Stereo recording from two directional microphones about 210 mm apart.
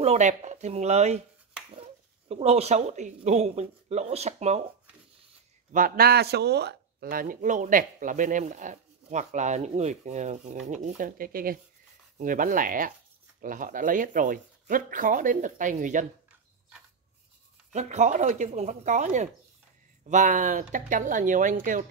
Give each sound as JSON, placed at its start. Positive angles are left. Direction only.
{"t": 0.0, "sound": "speech", "side_deg": -30}
{"t": 5.7, "sound": "speech", "side_deg": -40}
{"t": 17.7, "sound": "speech", "side_deg": -35}